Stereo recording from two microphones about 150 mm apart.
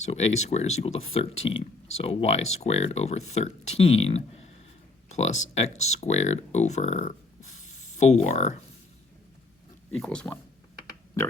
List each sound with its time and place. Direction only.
0.1 s speech: 45° left (ahead or behind)
9.9 s speech: 5° left (ahead or behind)